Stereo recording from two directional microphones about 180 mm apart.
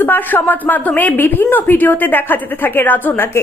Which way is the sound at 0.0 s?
10° left (ahead or behind).